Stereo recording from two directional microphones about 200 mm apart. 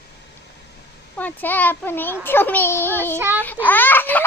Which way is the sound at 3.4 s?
10° left (ahead or behind).